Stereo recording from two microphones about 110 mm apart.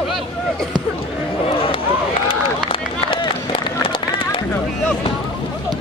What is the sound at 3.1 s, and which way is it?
Run, 50° left (ahead or behind).